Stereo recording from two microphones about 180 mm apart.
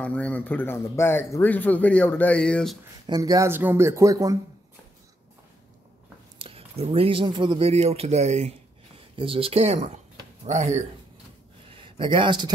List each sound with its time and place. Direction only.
0.0 s speech: 10° left (ahead or behind)
3.1 s speech: 20° right (ahead or behind)
6.3 s speech: 30° right (ahead or behind)
11.7 s a sound: 30° right (ahead or behind)